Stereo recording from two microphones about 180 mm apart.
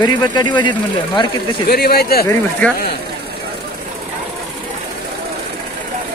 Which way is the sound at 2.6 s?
5° left (ahead or behind).